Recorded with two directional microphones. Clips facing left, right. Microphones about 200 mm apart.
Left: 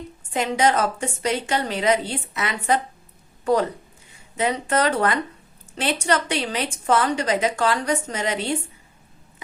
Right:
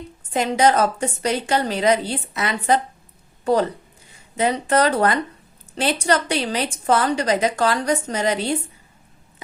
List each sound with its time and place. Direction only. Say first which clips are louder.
0.3 s a woman's voice: right 3 dB; 35° right (ahead or behind)